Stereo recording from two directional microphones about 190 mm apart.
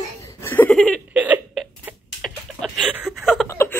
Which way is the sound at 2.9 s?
5° right (ahead or behind).